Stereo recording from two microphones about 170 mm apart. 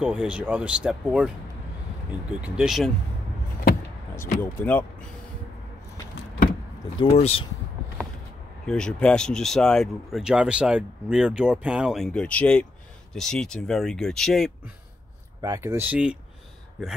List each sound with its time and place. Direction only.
0.0 s speech: 5° right (ahead or behind)
2.4 s speech: 5° right (ahead or behind)
4.4 s speech: 10° left (ahead or behind)
7.0 s speech: 35° left (ahead or behind)
8.6 s speech: 5° left (ahead or behind)
15.4 s speech: 20° right (ahead or behind)